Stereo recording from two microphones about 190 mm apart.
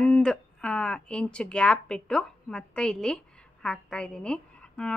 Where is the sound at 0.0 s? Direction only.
5° left (ahead or behind).